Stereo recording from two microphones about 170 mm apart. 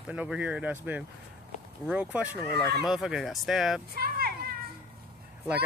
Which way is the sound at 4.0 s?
65° right (ahead or behind).